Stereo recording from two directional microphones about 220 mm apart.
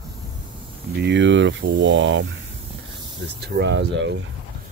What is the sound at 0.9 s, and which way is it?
Speech, 50° right (ahead or behind).